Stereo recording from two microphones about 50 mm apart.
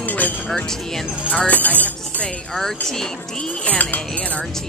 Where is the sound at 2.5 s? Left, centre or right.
Centre.